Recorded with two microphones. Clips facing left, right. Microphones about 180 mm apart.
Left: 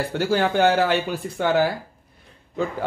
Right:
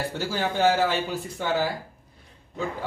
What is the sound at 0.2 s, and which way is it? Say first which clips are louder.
Speech: left 5 dB; 65° left (ahead or behind).